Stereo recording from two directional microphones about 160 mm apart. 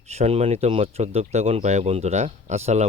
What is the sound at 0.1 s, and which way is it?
Speech, 40° right (ahead or behind).